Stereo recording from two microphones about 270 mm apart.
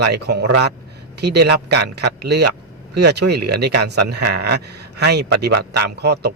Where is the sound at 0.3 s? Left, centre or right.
Right.